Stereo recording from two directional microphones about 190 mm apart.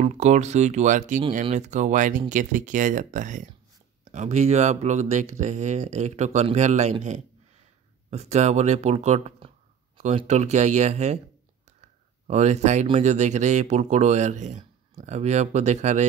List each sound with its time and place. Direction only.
0.0 s speech: 40° right (ahead or behind)
12.3 s speech: 40° right (ahead or behind)